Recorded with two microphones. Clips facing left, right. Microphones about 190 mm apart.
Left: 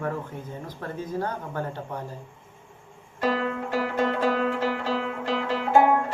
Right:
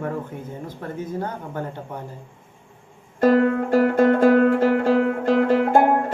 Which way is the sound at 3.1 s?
50° right (ahead or behind).